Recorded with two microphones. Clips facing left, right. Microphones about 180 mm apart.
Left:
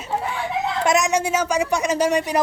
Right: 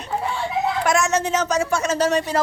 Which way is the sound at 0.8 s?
20° left (ahead or behind).